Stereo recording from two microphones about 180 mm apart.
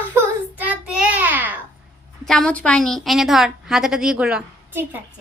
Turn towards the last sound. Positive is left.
turn(degrees=-10)  # may be behind; listen again after turning